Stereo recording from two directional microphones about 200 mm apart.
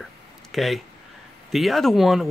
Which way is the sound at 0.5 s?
Centre (ahead or behind).